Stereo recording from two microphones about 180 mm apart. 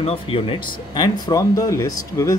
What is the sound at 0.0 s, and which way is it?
Speech, 30° left (ahead or behind).